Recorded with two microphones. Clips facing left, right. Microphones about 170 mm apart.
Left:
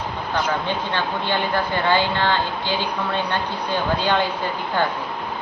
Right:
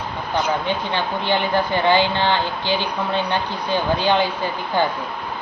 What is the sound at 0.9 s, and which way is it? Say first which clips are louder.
A woman's voice: right 2 dB; 15° right (ahead or behind).